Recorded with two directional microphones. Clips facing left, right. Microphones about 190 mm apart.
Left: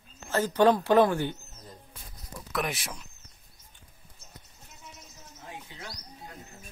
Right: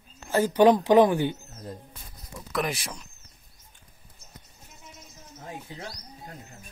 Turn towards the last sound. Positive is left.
turn(degrees=-40)  # may be behind; listen again after turning